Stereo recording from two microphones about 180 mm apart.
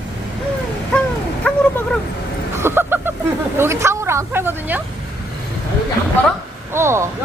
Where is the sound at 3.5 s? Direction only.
15° right (ahead or behind).